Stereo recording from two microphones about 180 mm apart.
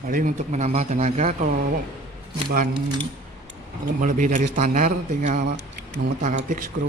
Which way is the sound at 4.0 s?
45° right (ahead or behind).